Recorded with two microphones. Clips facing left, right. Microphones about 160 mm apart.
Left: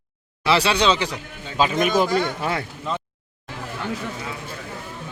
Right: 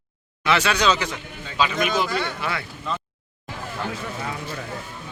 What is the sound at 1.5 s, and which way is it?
A man's voice, 45° left (ahead or behind).